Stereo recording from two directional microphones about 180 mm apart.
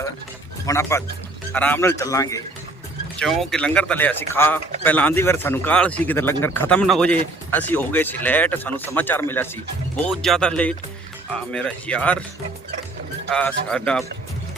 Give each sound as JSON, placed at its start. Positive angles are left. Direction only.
{"t": 0.6, "sound": "speech", "side_deg": 15}
{"t": 3.2, "sound": "speech", "side_deg": 0}
{"t": 13.3, "sound": "speech", "side_deg": 5}